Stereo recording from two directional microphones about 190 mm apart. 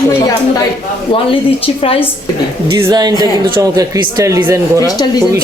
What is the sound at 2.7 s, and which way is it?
Speech, 20° right (ahead or behind).